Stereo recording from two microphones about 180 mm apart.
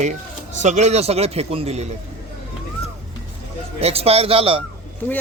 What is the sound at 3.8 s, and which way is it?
Speech, 35° right (ahead or behind).